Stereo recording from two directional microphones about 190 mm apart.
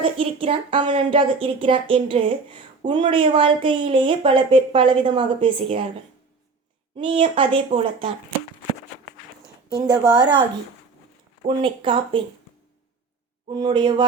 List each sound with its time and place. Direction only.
0.0 s speech: 30° right (ahead or behind)
6.9 s speech: 30° right (ahead or behind)
9.6 s a woman's voice: 25° right (ahead or behind)
11.4 s speech: 25° right (ahead or behind)
13.5 s speech: 25° right (ahead or behind)